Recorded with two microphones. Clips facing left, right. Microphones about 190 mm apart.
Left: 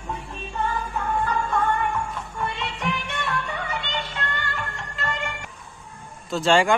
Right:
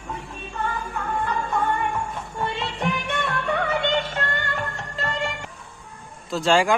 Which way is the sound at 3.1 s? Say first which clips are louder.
Right 4 dB; 55° right (ahead or behind).